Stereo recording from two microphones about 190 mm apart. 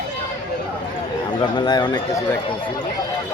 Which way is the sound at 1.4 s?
25° left (ahead or behind).